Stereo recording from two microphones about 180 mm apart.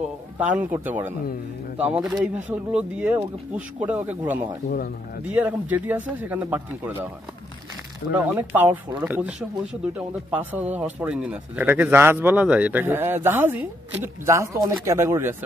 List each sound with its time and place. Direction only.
0.5 s speech: 10° right (ahead or behind)
4.6 s speech: 65° left (ahead or behind)
5.3 s speech: 10° right (ahead or behind)
8.1 s speech: 10° right (ahead or behind)